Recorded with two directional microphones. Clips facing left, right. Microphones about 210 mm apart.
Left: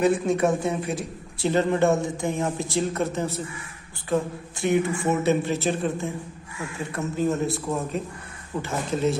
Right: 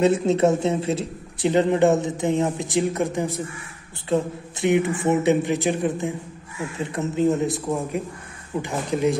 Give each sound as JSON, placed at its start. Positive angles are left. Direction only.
{"t": 0.0, "sound": "speech", "side_deg": -25}